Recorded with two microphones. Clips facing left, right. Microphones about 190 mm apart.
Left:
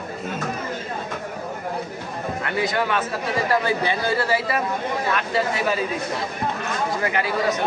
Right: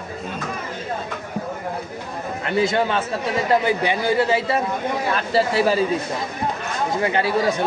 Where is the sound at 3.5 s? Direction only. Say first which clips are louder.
Right 4 dB; 15° right (ahead or behind).